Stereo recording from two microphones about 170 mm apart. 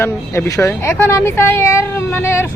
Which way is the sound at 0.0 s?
15° left (ahead or behind).